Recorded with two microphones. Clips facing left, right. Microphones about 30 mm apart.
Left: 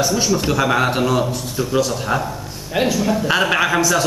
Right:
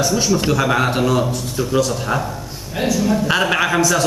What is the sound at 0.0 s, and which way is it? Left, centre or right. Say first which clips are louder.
A man's voice: right 1 dB; centre.